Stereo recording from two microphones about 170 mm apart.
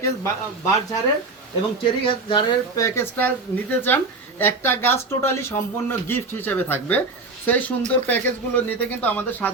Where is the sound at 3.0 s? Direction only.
10° left (ahead or behind).